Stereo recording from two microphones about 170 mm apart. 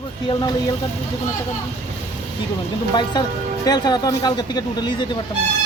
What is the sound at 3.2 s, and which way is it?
Speech, 25° left (ahead or behind).